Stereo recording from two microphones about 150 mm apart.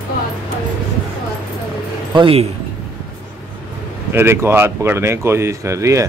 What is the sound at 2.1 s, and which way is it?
Speech, 35° right (ahead or behind).